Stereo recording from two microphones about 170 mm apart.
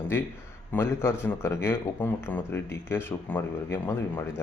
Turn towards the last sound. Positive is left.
turn(degrees=15)  # may be behind; listen again after turning